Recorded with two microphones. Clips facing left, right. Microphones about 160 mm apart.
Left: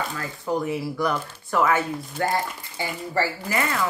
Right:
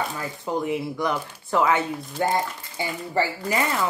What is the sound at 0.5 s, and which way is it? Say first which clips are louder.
A man's voice: even; 20° right (ahead or behind).